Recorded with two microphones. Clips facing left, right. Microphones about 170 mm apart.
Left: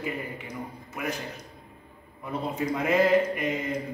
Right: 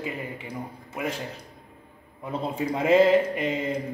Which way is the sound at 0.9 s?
25° right (ahead or behind).